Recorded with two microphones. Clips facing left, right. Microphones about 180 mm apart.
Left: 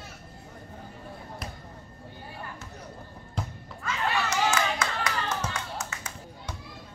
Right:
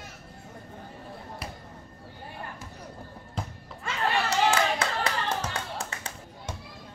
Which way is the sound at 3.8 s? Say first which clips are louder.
Right 1 dB; 30° right (ahead or behind).